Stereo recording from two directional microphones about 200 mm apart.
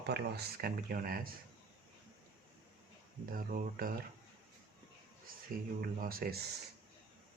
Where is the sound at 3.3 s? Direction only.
45° right (ahead or behind).